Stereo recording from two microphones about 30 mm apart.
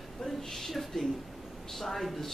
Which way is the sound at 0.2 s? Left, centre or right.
Centre.